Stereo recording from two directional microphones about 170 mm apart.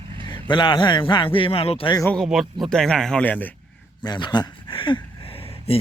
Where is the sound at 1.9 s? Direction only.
10° left (ahead or behind).